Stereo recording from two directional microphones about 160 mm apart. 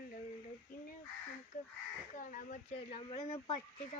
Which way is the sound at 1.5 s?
55° left (ahead or behind).